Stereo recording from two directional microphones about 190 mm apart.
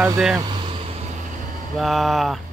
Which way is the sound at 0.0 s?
5° right (ahead or behind).